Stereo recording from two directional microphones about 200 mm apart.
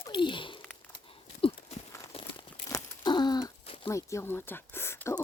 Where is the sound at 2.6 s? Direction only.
20° left (ahead or behind).